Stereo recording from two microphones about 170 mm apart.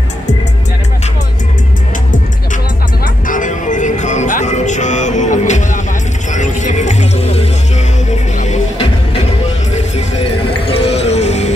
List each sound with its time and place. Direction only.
3.3 s music: 50° left (ahead or behind)
9.8 s clip-clop: 40° left (ahead or behind)
11.1 s music: 40° left (ahead or behind)